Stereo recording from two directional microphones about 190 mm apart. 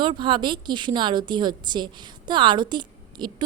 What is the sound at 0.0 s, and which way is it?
A woman's voice, 25° right (ahead or behind).